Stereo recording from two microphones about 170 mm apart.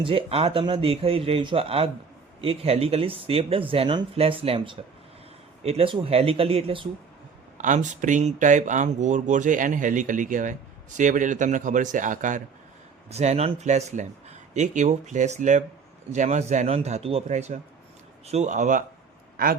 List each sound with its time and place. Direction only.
0.0 s speech: 30° right (ahead or behind)
7.6 s speech: 45° right (ahead or behind)
19.4 s speech: 60° right (ahead or behind)